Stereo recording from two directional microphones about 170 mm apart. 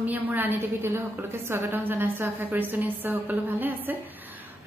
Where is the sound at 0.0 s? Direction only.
10° right (ahead or behind).